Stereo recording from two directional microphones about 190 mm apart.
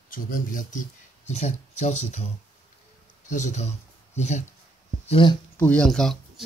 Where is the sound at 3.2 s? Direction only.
40° left (ahead or behind).